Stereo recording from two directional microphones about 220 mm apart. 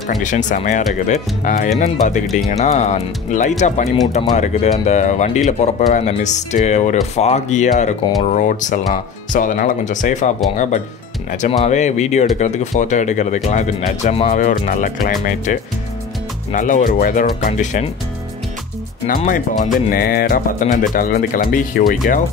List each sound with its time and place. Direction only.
0.2 s speech: 35° left (ahead or behind)
11.4 s speech: 30° left (ahead or behind)
19.0 s speech: 40° left (ahead or behind)